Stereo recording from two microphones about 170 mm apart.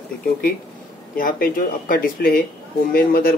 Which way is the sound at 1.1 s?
55° left (ahead or behind).